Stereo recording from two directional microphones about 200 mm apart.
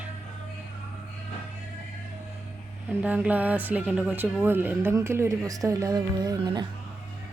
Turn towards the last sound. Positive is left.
turn(degrees=-20)  # may be behind; listen again after turning